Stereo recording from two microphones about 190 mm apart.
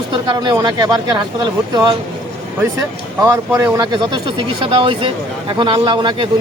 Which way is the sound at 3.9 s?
25° right (ahead or behind).